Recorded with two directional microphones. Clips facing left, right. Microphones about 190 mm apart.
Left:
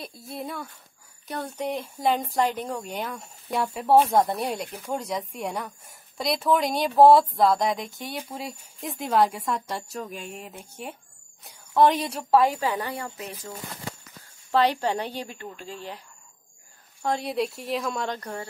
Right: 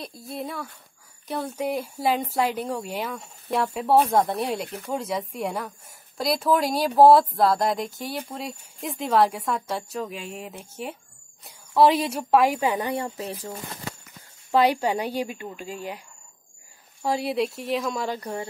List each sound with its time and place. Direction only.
0.2 s speech: centre (ahead or behind)
12.5 s a woman's voice: 20° right (ahead or behind)
13.2 s speech: 35° right (ahead or behind)
14.5 s a woman's voice: 10° right (ahead or behind)
17.0 s speech: 5° right (ahead or behind)